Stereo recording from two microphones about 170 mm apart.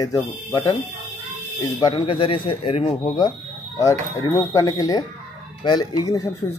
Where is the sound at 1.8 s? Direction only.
30° left (ahead or behind).